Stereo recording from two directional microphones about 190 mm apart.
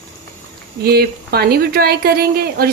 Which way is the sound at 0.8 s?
55° right (ahead or behind).